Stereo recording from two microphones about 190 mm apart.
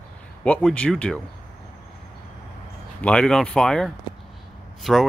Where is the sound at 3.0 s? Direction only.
5° left (ahead or behind).